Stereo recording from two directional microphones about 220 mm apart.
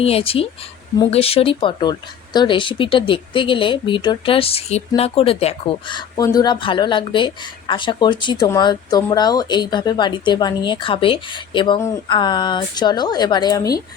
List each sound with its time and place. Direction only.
0.0 s speech: 25° left (ahead or behind)